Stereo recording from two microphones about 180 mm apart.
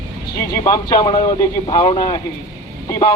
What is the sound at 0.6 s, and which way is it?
A man's voice, 20° left (ahead or behind).